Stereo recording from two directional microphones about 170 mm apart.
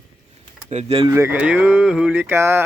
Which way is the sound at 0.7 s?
40° right (ahead or behind).